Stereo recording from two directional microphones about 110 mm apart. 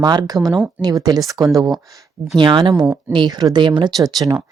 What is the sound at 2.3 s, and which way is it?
Speech, 45° right (ahead or behind).